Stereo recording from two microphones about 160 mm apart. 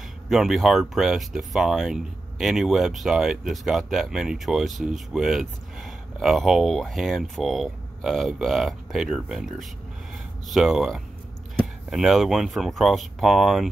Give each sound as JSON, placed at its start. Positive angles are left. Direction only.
{"t": 0.3, "sound": "speech", "side_deg": 0}